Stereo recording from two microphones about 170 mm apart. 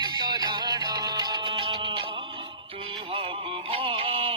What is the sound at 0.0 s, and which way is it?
Music, 25° right (ahead or behind).